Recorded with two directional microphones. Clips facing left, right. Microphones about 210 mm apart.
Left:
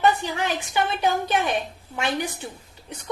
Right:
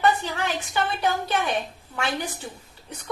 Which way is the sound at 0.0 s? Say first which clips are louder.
Left 1 dB; 15° left (ahead or behind).